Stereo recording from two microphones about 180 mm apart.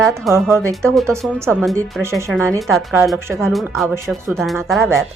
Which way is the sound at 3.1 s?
15° right (ahead or behind).